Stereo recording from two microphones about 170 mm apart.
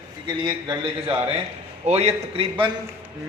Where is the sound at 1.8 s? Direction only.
35° right (ahead or behind).